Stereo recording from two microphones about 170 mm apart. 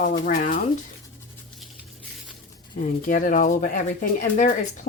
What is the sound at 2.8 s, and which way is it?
Speech, 55° left (ahead or behind).